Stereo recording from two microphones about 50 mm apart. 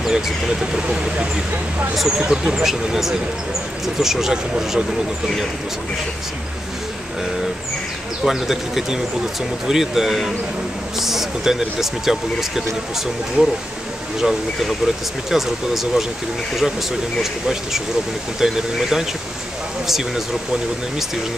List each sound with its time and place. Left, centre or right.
0.0 s speech: centre
2.0 s speech: centre
8.3 s speech: centre
13.4 s speech: right
14.2 s speech: centre
17.2 s speech: centre